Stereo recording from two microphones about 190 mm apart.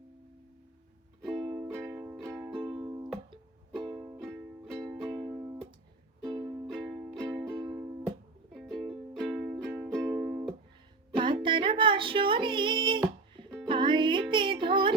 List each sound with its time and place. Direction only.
1.2 s music: centre (ahead or behind); by 4.2 s 15° right (ahead or behind)
4.2 s music: centre (ahead or behind)
5.3 s music: 15° right (ahead or behind)
6.7 s music: centre (ahead or behind)
7.2 s music: 15° right (ahead or behind)
8.5 s music: centre (ahead or behind)
11.4 s music: 25° right (ahead or behind)